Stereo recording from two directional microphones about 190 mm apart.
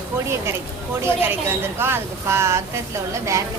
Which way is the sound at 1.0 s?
10° right (ahead or behind).